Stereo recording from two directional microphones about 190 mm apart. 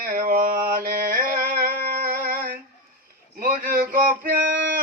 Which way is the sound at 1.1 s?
45° right (ahead or behind).